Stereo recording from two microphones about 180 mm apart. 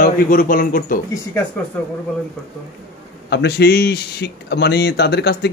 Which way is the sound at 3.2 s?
70° left (ahead or behind).